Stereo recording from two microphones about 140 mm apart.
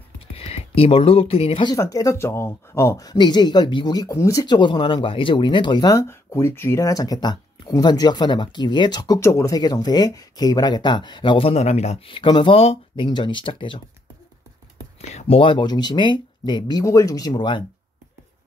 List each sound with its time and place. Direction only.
0.4 s speech: 45° left (ahead or behind)
1.7 s speech: 25° left (ahead or behind)
6.0 s speech: 20° left (ahead or behind); by 12.0 s 50° left (ahead or behind)
12.1 s speech: 35° left (ahead or behind)
15.0 s speech: 50° left (ahead or behind)